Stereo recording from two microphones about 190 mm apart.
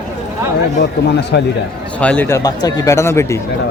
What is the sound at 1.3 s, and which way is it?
Speech, 60° left (ahead or behind).